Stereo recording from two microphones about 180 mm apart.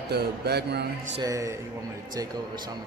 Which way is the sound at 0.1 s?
65° right (ahead or behind).